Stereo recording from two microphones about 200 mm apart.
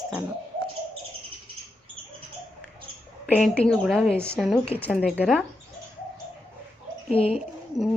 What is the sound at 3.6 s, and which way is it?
A woman's voice, centre (ahead or behind).